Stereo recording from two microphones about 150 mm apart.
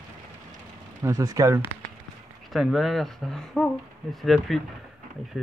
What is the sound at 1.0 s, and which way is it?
Speech, 25° right (ahead or behind).